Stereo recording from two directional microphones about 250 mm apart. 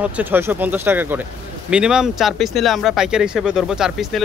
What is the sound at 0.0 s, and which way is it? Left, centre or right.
Speech, centre.